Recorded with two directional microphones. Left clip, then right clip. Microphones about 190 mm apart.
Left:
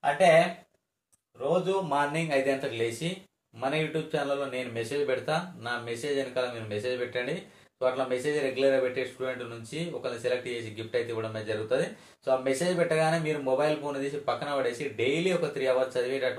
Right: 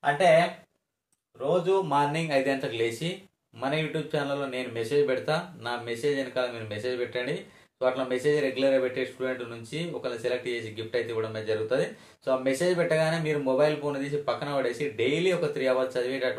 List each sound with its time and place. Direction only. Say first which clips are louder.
1.9 s speech: right 2 dB; 25° right (ahead or behind)